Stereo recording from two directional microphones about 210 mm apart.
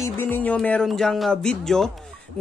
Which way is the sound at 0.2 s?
10° left (ahead or behind).